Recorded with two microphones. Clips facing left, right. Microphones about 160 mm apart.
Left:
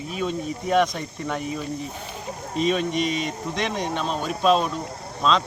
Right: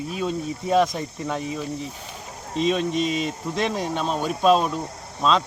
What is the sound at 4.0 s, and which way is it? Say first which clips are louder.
Speech: right 3 dB; 5° right (ahead or behind).